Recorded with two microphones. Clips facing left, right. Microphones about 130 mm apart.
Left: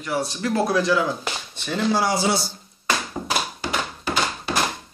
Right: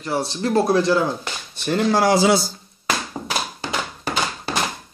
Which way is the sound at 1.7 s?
55° right (ahead or behind).